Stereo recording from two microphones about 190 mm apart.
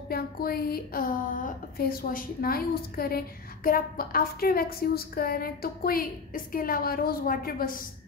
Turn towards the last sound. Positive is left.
turn(degrees=50)  # may be behind; listen again after turning